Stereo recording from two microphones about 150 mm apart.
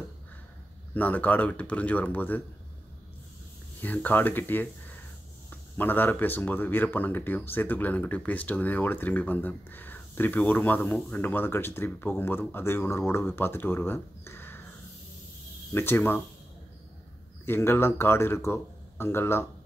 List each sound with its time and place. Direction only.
0.9 s speech: 10° left (ahead or behind)
3.8 s speech: 10° left (ahead or behind)
15.7 s speech: 15° left (ahead or behind)
17.5 s speech: 15° left (ahead or behind)